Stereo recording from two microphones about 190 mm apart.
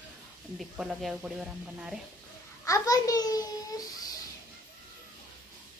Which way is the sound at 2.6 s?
20° left (ahead or behind).